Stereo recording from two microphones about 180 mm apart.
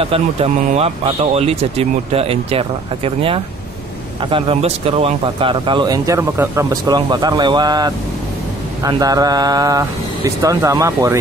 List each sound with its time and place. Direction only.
0.0 s speech: 35° right (ahead or behind); by 11.1 s 15° right (ahead or behind)